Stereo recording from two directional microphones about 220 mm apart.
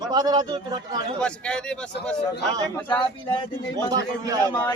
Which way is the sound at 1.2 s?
5° left (ahead or behind).